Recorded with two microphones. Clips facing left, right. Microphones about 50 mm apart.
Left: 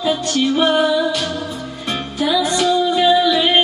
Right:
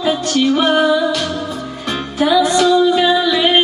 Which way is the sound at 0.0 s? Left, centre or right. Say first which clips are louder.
Right 2 dB; right.